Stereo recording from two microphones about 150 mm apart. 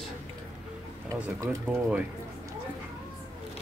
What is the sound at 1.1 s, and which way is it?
Speech, 25° right (ahead or behind).